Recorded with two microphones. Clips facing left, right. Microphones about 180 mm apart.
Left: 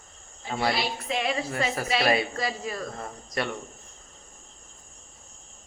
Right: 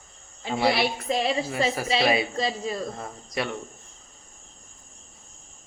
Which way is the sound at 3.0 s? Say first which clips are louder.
Right 1 dB; centre (ahead or behind).